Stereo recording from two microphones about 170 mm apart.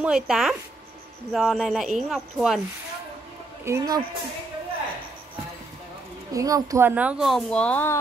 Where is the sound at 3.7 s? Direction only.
20° right (ahead or behind).